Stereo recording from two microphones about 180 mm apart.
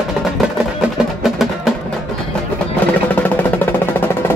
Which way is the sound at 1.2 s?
Centre (ahead or behind).